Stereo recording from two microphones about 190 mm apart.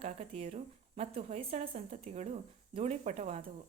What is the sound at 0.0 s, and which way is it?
Speech, 30° right (ahead or behind).